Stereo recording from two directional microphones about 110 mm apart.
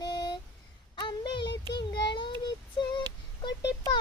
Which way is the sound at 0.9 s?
45° left (ahead or behind).